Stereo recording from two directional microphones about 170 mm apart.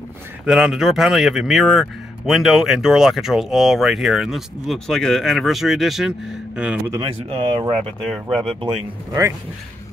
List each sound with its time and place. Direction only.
0.5 s speech: 5° right (ahead or behind)
7.0 s speech: 30° right (ahead or behind)